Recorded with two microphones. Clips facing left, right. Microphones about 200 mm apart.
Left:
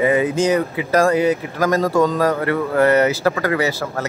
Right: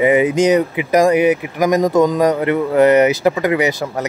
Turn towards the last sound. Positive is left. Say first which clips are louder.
# right 3 dB
turn(degrees=-20)  # may be behind; listen again after turning